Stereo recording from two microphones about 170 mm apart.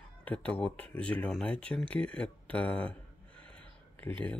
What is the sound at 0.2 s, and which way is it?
Speech, 10° left (ahead or behind).